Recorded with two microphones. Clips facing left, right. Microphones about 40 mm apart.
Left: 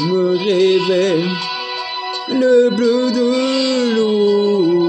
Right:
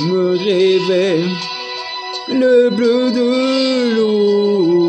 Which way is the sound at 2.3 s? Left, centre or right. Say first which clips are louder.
Right 1 dB; centre.